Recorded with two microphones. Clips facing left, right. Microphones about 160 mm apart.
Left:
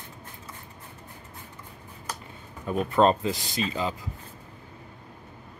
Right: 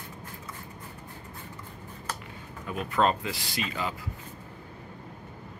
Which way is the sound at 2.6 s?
35° left (ahead or behind).